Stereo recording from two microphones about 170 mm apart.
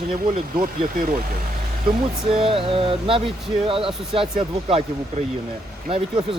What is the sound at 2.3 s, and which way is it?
Speech, 35° right (ahead or behind).